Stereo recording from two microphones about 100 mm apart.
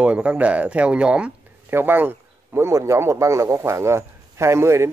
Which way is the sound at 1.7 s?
20° right (ahead or behind).